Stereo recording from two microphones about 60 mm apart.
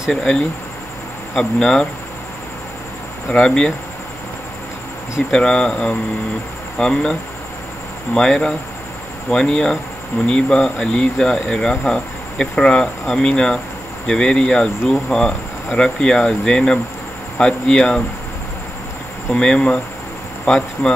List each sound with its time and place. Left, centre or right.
0.1 s speech: centre
3.3 s speech: centre
5.3 s speech: centre
19.3 s speech: centre